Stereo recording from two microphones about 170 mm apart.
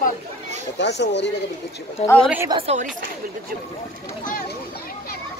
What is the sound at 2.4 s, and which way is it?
Speech, 30° right (ahead or behind).